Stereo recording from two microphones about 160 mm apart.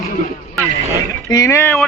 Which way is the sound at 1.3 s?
20° left (ahead or behind).